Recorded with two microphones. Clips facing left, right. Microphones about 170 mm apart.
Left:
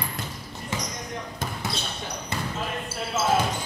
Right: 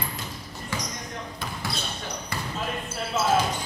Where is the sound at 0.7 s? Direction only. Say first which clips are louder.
Left 1 dB; 20° left (ahead or behind).